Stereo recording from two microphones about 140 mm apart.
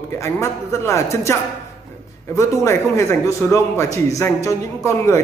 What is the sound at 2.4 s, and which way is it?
Speech, 20° left (ahead or behind).